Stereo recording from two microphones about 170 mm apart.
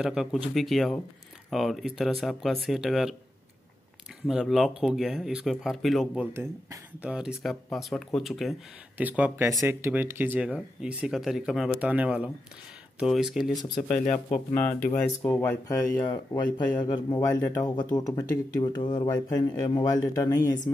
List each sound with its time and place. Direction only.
0.0 s speech: centre (ahead or behind)
4.3 s speech: centre (ahead or behind)
6.3 s speech: 15° right (ahead or behind)
14.0 s speech: 45° left (ahead or behind)
15.2 s speech: 15° left (ahead or behind)
16.1 s speech: 25° left (ahead or behind)